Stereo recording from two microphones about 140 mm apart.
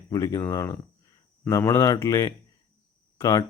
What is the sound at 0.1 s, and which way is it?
Speech, 25° left (ahead or behind).